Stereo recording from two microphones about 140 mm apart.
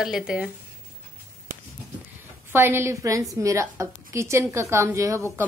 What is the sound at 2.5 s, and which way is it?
A woman's voice, 15° right (ahead or behind).